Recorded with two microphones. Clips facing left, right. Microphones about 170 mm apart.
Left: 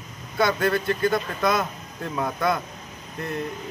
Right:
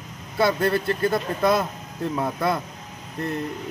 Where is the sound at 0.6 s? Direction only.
30° right (ahead or behind).